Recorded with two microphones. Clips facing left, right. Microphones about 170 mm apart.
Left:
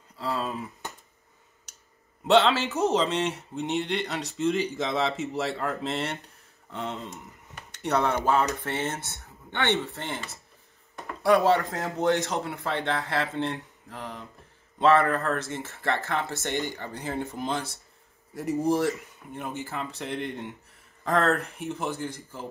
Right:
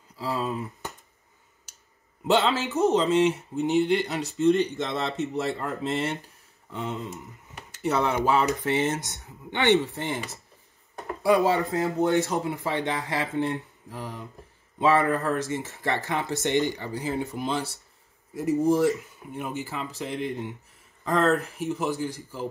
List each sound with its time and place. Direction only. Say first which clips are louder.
0.2 s speech: right 1 dB; 5° right (ahead or behind)
2.2 s speech: left 2 dB; centre (ahead or behind)
11.4 s speech: even; 5° right (ahead or behind)
16.9 s speech: right 3 dB; centre (ahead or behind)